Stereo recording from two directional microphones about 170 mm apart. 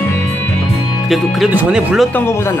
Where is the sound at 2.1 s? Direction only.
15° left (ahead or behind).